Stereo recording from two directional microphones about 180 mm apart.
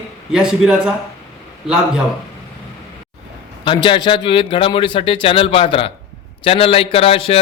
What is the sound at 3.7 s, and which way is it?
A man's voice, 25° left (ahead or behind).